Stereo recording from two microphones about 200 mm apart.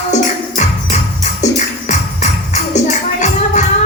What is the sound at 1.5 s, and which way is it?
Music, 35° left (ahead or behind).